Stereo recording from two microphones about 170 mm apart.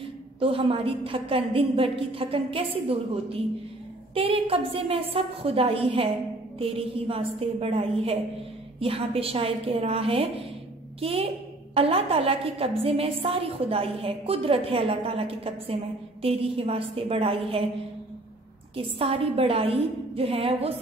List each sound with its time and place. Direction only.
0.4 s a woman's voice: 35° right (ahead or behind)
4.1 s a woman's voice: 35° right (ahead or behind)
18.8 s a woman's voice: 35° right (ahead or behind)